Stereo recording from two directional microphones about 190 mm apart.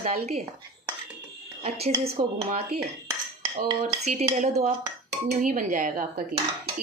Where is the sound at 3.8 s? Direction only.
35° right (ahead or behind).